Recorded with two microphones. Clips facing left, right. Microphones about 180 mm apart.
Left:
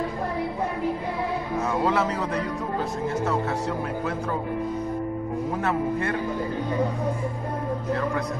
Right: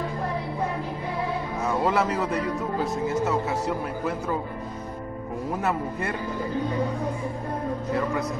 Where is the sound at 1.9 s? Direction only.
5° right (ahead or behind).